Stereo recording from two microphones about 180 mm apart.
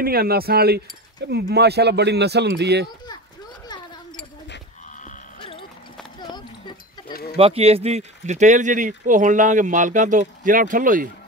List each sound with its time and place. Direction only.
0.0 s speech: 55° right (ahead or behind)
5.4 s clip-clop: 30° left (ahead or behind)
7.3 s a man's voice: 35° right (ahead or behind); by 11.1 s 50° right (ahead or behind)